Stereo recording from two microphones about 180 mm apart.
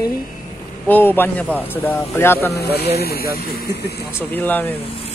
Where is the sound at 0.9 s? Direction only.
10° left (ahead or behind).